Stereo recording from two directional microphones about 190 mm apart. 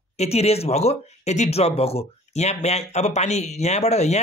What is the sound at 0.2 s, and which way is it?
Speech, 35° left (ahead or behind).